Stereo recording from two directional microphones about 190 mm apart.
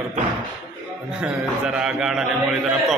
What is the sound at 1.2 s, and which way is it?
Speech, 5° right (ahead or behind).